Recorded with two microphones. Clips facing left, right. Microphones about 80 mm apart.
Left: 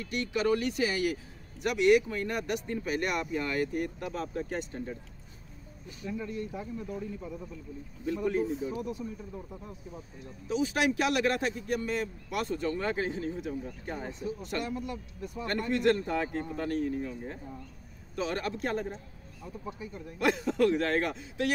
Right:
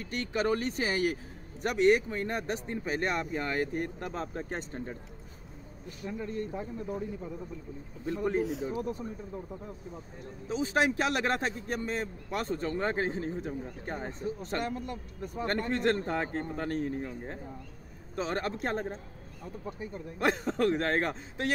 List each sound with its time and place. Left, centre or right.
0.0 s a man's voice: right
6.0 s a man's voice: right
8.0 s a man's voice: right
10.5 s a man's voice: right